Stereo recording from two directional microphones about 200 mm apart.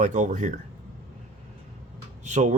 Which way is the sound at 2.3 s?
35° right (ahead or behind).